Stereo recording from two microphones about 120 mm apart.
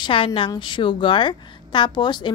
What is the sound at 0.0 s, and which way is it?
A woman's voice, 45° left (ahead or behind).